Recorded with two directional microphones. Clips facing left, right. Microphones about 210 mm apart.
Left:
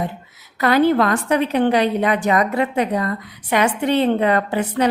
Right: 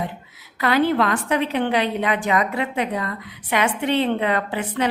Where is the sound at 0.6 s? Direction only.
45° left (ahead or behind).